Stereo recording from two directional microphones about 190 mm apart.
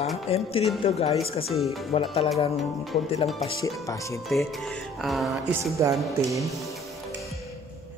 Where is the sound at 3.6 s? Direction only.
15° left (ahead or behind).